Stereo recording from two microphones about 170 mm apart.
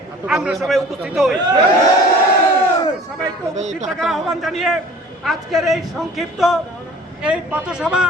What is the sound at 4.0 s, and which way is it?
A man's voice, centre (ahead or behind).